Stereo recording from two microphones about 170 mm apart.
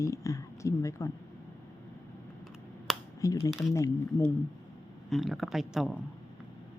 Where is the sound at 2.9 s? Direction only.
Centre (ahead or behind).